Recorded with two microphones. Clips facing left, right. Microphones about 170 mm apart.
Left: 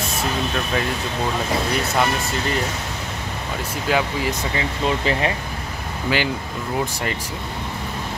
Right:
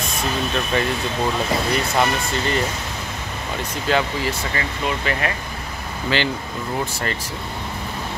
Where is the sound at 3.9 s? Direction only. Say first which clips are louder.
Even; 15° left (ahead or behind).